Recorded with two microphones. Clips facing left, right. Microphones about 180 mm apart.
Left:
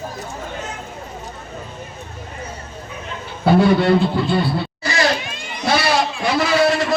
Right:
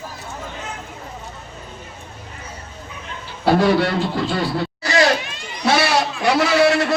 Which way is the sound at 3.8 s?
90° right.